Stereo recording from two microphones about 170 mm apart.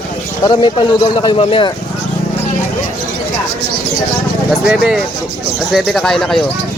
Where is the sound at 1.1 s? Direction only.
30° left (ahead or behind).